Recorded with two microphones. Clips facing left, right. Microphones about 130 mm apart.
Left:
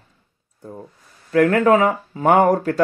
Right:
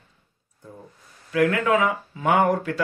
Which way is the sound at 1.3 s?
45° left (ahead or behind).